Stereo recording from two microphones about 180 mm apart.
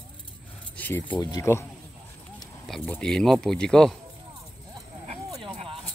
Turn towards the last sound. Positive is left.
turn(degrees=-30)  # may be behind; listen again after turning